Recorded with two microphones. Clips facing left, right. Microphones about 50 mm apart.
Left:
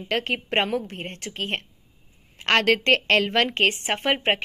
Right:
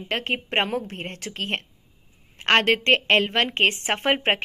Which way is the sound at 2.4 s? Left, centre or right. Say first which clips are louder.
Right 1 dB; right.